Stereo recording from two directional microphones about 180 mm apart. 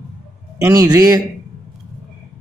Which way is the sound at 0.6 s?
20° right (ahead or behind).